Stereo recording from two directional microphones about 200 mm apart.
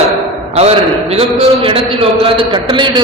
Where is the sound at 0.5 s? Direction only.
30° right (ahead or behind).